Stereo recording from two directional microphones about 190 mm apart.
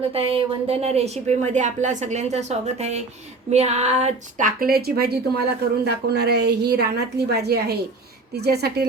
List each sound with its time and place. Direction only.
0.1 s a woman's voice: 30° right (ahead or behind); by 8.9 s 55° right (ahead or behind)